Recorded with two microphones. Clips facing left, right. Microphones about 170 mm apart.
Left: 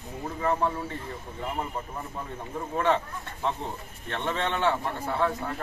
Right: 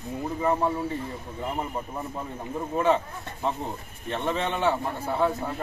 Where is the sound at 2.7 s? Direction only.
10° right (ahead or behind).